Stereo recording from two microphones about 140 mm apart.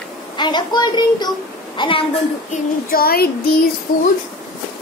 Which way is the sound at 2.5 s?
90° left.